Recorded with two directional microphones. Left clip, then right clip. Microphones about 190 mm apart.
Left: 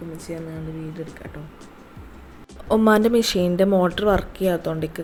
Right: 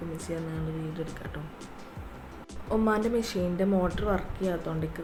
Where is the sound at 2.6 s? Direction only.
40° left (ahead or behind).